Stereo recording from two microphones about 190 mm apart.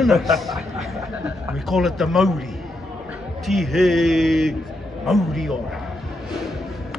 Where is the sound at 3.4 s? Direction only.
Centre (ahead or behind).